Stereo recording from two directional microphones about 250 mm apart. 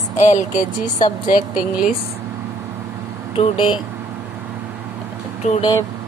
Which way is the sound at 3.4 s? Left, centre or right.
Centre.